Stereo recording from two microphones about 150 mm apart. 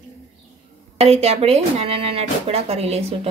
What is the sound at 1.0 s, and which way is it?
Speech, 45° right (ahead or behind).